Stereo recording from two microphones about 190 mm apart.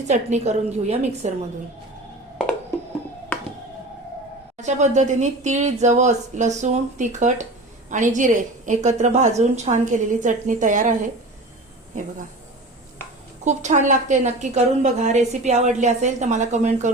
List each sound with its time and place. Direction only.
0.1 s a woman's voice: 35° right (ahead or behind)
4.5 s a woman's voice: 40° right (ahead or behind)
13.4 s a woman's voice: 40° right (ahead or behind)